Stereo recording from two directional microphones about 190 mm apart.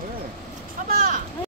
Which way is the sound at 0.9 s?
50° right (ahead or behind).